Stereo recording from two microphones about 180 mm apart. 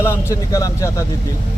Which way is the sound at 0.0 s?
15° left (ahead or behind).